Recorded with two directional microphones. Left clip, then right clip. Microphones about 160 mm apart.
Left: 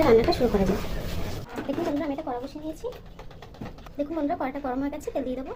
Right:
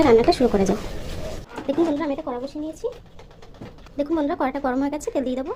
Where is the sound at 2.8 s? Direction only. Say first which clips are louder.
Right 6 dB; 60° right (ahead or behind).